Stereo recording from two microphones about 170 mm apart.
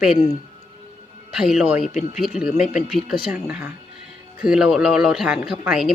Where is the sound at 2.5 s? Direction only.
40° left (ahead or behind).